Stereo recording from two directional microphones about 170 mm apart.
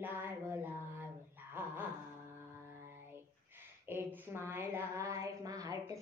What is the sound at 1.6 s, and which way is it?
Dog, 10° right (ahead or behind).